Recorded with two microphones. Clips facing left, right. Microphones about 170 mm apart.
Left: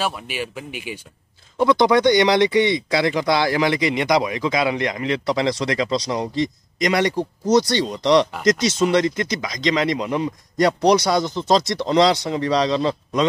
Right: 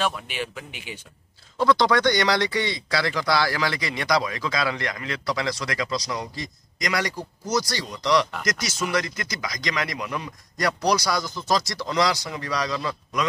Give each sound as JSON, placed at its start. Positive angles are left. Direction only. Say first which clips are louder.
{"t": 0.0, "sound": "speech", "louder": "left 2 dB", "side_deg": 10}